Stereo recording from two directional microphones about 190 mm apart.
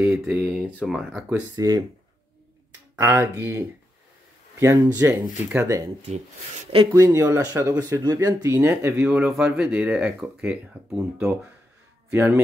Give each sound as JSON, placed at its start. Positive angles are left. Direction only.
{"t": 0.2, "sound": "speech", "side_deg": -5}
{"t": 1.5, "sound": "speech", "side_deg": -20}
{"t": 3.0, "sound": "speech", "side_deg": -15}
{"t": 6.7, "sound": "speech", "side_deg": -25}
{"t": 7.0, "sound": "a man's voice", "side_deg": -15}